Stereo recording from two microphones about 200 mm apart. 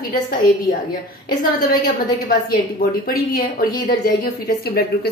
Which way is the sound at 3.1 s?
45° left (ahead or behind).